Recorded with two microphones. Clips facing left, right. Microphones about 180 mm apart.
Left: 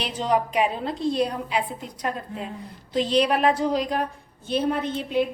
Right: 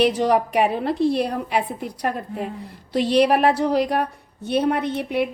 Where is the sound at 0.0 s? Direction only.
70° right (ahead or behind).